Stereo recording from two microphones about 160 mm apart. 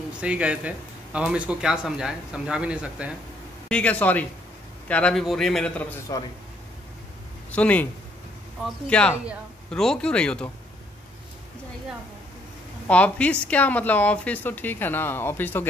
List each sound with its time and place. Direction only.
0.2 s speech: 5° right (ahead or behind)
3.6 s a man's voice: 10° left (ahead or behind)
7.5 s a man's voice: 10° left (ahead or behind)
12.8 s speech: 10° left (ahead or behind)